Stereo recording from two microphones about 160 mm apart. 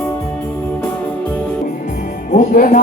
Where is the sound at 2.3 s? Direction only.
55° left (ahead or behind).